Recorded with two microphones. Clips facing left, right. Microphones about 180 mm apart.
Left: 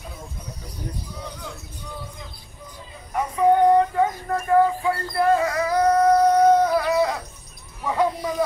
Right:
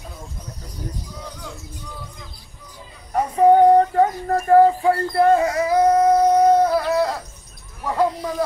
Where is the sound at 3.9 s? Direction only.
40° right (ahead or behind).